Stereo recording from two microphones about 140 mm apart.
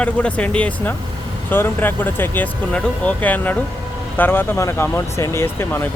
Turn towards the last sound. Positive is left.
turn(degrees=15)  # may be behind; listen again after turning